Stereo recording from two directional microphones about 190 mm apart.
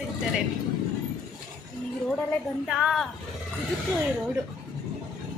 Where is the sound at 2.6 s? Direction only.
Centre (ahead or behind).